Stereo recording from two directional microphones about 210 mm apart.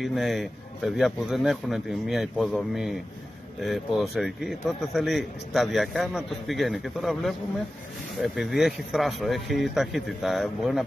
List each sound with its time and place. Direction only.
0.0 s a man's voice: centre (ahead or behind)